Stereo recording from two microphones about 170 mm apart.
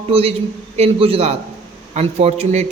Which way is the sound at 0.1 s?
35° right (ahead or behind).